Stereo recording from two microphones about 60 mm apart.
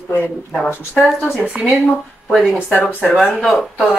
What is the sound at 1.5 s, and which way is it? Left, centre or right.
Speech, centre.